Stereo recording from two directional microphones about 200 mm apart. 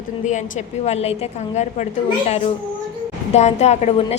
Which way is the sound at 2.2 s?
30° left (ahead or behind).